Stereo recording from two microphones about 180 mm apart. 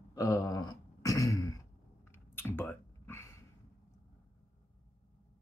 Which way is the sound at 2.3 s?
10° left (ahead or behind).